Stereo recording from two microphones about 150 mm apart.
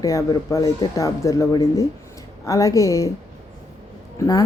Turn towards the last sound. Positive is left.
turn(degrees=20)  # may be behind; listen again after turning